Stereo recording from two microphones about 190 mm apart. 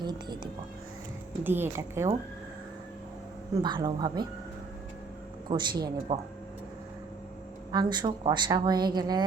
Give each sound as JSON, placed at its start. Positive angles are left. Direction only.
{"t": 0.0, "sound": "speech", "side_deg": -25}
{"t": 1.5, "sound": "a woman's voice", "side_deg": -10}
{"t": 3.5, "sound": "a woman's voice", "side_deg": -25}
{"t": 5.5, "sound": "a woman's voice", "side_deg": -25}
{"t": 7.7, "sound": "a woman's voice", "side_deg": -20}